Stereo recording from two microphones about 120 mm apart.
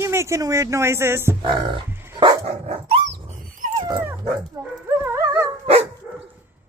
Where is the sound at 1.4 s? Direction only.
40° right (ahead or behind).